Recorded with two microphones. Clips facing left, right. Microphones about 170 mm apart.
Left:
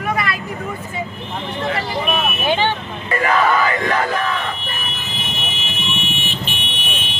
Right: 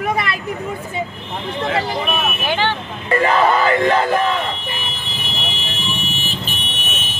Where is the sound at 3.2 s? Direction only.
30° right (ahead or behind).